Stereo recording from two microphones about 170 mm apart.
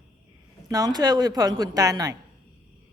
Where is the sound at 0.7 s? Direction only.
20° right (ahead or behind).